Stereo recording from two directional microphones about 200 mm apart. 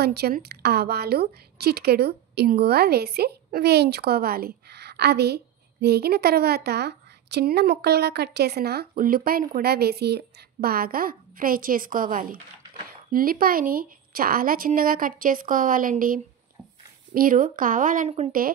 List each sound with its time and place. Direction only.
0.0 s a woman's voice: 55° right (ahead or behind); by 18.4 s 35° right (ahead or behind)